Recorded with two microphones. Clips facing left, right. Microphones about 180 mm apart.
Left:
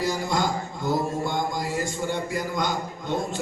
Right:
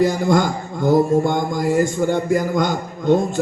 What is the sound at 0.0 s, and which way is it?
Mantra, 50° right (ahead or behind).